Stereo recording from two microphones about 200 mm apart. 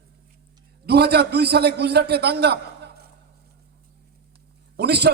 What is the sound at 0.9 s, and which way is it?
A man's voice, 55° right (ahead or behind).